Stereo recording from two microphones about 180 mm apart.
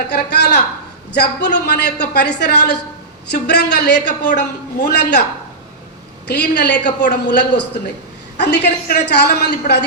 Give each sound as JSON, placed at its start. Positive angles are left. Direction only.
{"t": 0.1, "sound": "a woman's voice", "side_deg": 65}
{"t": 6.2, "sound": "a woman's voice", "side_deg": 65}